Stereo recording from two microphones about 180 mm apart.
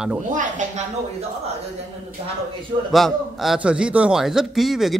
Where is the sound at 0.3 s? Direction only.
45° right (ahead or behind).